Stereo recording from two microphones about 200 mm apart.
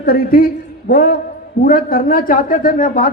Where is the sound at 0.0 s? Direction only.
50° left (ahead or behind).